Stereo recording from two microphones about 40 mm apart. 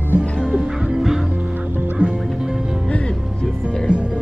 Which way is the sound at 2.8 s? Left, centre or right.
Left.